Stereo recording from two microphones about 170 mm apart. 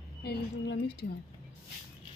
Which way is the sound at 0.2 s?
70° left (ahead or behind).